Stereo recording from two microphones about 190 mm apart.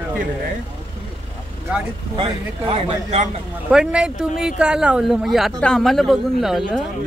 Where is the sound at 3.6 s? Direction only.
5° right (ahead or behind).